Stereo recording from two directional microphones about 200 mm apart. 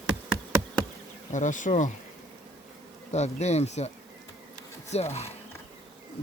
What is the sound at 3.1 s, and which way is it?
Speech, 35° left (ahead or behind).